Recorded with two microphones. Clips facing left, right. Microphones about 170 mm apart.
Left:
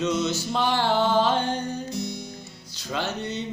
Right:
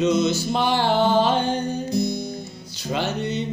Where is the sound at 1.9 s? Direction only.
35° right (ahead or behind).